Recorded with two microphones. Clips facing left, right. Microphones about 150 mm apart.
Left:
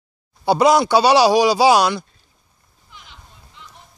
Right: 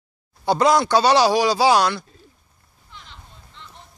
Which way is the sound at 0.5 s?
10° left (ahead or behind).